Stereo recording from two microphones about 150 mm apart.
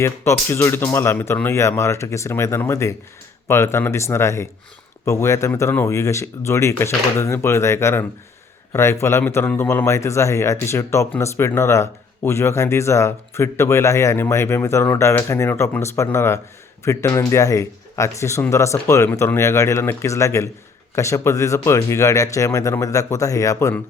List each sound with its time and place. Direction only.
0.0 s a man's voice: 20° left (ahead or behind)